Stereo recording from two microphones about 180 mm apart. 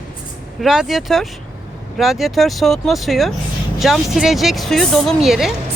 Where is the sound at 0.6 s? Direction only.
Centre (ahead or behind).